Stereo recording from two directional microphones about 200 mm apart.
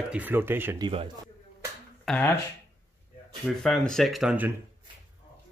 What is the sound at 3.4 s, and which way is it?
Speech, centre (ahead or behind).